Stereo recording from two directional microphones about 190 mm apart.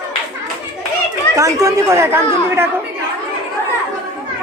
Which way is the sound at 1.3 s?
15° right (ahead or behind).